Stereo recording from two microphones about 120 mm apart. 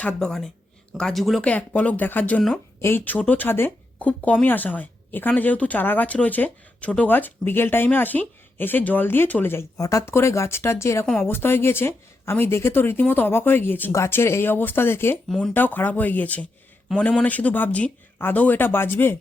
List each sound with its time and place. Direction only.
0.0 s speech: 10° left (ahead or behind)
1.5 s speech: 10° left (ahead or behind)
9.7 s speech: 30° left (ahead or behind)
11.0 s speech: 5° left (ahead or behind)
11.3 s speech: 20° left (ahead or behind)
15.3 s speech: 5° left (ahead or behind)
15.5 s speech: 15° left (ahead or behind)